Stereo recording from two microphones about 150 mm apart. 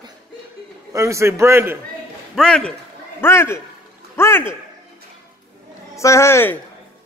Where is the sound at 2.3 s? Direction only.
5° left (ahead or behind).